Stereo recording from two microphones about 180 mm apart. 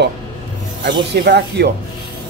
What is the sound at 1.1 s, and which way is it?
Speech, 70° right (ahead or behind).